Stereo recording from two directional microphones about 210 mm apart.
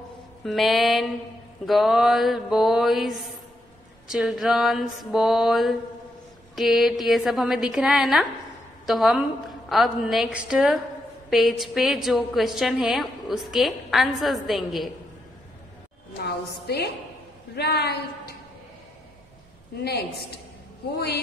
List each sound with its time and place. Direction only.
0.4 s a woman's voice: centre (ahead or behind)
16.3 s a woman's voice: 50° left (ahead or behind)
19.8 s a woman's voice: 50° left (ahead or behind)